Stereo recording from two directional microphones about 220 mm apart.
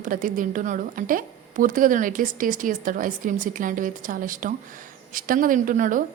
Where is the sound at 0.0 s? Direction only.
40° right (ahead or behind).